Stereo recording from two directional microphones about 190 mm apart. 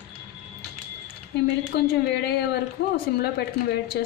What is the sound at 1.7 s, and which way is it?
Speech, 60° left (ahead or behind).